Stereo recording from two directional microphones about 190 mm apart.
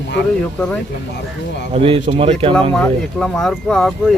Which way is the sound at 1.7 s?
30° right (ahead or behind).